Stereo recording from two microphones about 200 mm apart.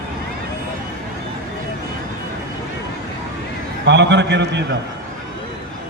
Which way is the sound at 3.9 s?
60° right (ahead or behind).